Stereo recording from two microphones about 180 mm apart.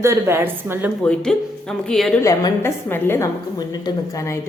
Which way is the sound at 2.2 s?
15° left (ahead or behind).